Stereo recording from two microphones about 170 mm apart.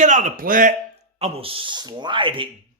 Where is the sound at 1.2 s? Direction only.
35° right (ahead or behind).